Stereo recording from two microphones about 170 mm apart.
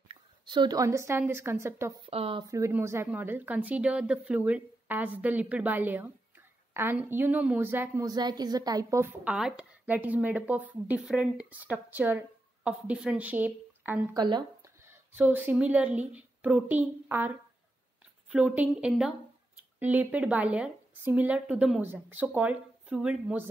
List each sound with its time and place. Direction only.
0.1 s a woman's voice: 25° right (ahead or behind)
2.0 s speech: 35° right (ahead or behind)
2.5 s a woman's voice: 15° right (ahead or behind)
14.1 s speech: 25° right (ahead or behind)
14.8 s a woman's voice: 10° right (ahead or behind)
18.3 s speech: 10° right (ahead or behind)